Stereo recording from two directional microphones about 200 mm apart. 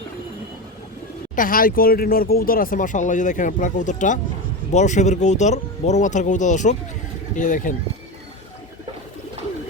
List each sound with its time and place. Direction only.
1.4 s speech: 45° left (ahead or behind)